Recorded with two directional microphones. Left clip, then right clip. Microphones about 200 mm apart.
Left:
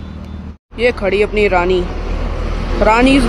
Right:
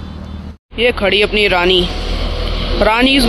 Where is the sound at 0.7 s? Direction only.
5° left (ahead or behind).